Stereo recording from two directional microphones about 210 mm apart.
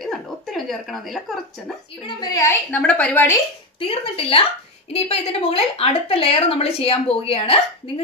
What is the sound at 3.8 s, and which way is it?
A woman's voice, 25° left (ahead or behind).